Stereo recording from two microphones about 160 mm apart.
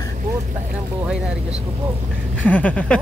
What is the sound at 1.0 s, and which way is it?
Speech, 5° right (ahead or behind).